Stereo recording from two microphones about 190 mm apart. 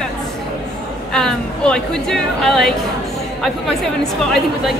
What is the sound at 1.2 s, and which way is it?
A woman's voice, 5° left (ahead or behind).